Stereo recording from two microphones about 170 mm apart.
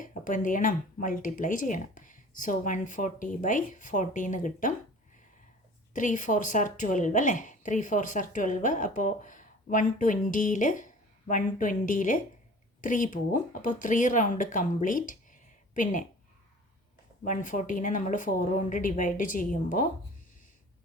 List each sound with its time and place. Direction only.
0.0 s a woman's voice: 50° left (ahead or behind)
5.9 s a woman's voice: 50° left (ahead or behind)
17.2 s a woman's voice: 50° left (ahead or behind)